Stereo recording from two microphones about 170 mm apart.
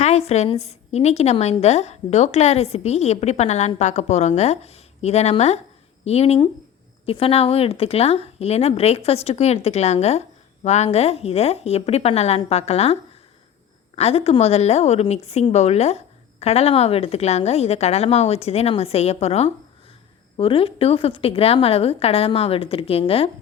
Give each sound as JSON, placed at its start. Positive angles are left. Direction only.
{"t": 0.0, "sound": "speech", "side_deg": 40}